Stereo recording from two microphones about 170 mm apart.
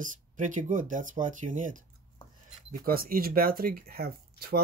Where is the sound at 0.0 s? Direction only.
50° right (ahead or behind).